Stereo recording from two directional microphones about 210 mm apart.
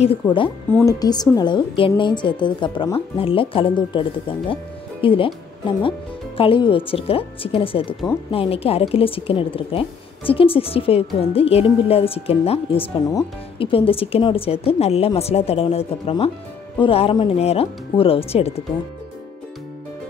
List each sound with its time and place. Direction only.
0.0 s speech: 25° left (ahead or behind)